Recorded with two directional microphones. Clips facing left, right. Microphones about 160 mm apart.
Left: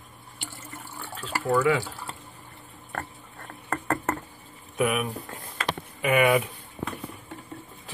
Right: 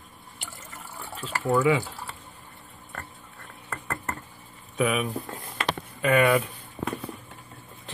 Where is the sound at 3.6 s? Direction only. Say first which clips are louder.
Left 7 dB; 70° left (ahead or behind).